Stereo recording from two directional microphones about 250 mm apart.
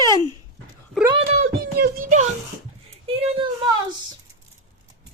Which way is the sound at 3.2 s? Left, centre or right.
Centre.